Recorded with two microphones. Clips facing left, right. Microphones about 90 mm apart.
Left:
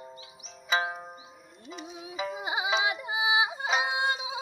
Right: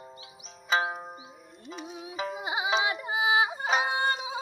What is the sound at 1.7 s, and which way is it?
Music, 40° right (ahead or behind).